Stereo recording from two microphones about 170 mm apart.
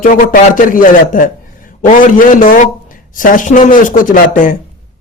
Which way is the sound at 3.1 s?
50° left (ahead or behind).